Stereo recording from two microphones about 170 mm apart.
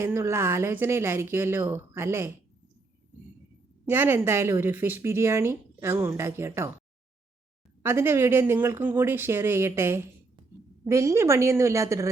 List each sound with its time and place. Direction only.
0.0 s a woman's voice: 15° right (ahead or behind)
3.8 s a woman's voice: 15° right (ahead or behind)
7.8 s a woman's voice: 15° right (ahead or behind)